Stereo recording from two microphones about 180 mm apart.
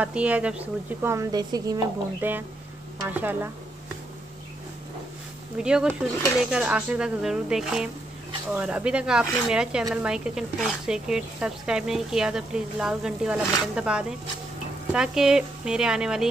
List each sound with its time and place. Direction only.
0.0 s speech: 5° right (ahead or behind)
3.1 s speech: 10° right (ahead or behind)
5.6 s speech: 5° right (ahead or behind)